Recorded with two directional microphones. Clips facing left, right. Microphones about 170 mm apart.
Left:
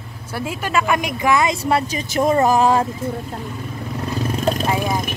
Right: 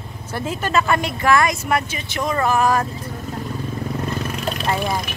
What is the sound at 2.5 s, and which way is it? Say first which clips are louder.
Speech: left 3 dB; 30° left (ahead or behind).